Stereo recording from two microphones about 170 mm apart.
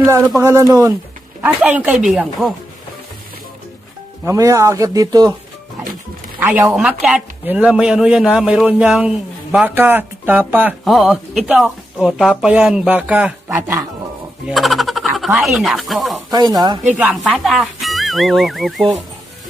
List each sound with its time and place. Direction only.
0.0 s speech: 15° right (ahead or behind)
4.3 s speech: 20° right (ahead or behind)
6.4 s speech: 10° right (ahead or behind)
14.5 s speech: centre (ahead or behind)
16.3 s speech: 25° right (ahead or behind)
17.0 s speech: centre (ahead or behind)